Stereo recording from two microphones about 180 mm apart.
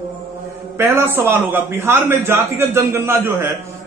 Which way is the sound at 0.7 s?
15° right (ahead or behind).